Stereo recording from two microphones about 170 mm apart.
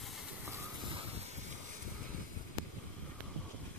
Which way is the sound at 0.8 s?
35° right (ahead or behind).